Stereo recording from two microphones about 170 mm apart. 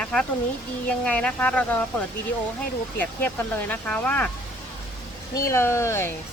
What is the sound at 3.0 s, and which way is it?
Speech, 10° left (ahead or behind).